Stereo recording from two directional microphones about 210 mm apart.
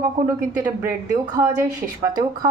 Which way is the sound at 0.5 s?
15° right (ahead or behind).